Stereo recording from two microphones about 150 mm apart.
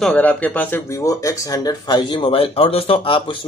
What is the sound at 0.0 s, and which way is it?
Speech, 10° left (ahead or behind).